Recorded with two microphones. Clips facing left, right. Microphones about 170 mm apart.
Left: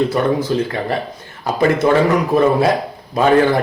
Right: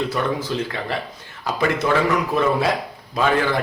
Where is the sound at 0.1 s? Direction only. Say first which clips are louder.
Left 6 dB; 35° left (ahead or behind).